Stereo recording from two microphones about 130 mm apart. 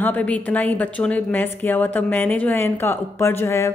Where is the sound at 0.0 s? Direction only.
10° left (ahead or behind).